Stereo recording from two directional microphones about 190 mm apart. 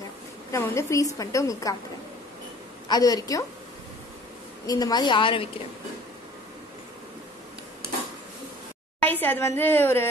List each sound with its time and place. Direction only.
0.5 s a woman's voice: 15° left (ahead or behind)
2.9 s a woman's voice: 20° left (ahead or behind)
4.6 s a woman's voice: 20° left (ahead or behind)
9.0 s a woman's voice: 10° left (ahead or behind)